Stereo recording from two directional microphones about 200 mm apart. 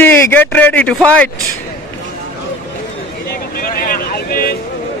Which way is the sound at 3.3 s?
45° left (ahead or behind).